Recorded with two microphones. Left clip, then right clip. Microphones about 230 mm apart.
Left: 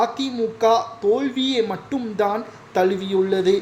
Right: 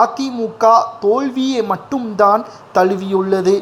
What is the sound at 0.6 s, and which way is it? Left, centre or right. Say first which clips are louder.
Speech: right 7 dB; centre.